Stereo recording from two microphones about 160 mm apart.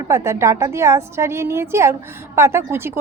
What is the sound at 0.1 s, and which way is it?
A woman's voice, 15° right (ahead or behind).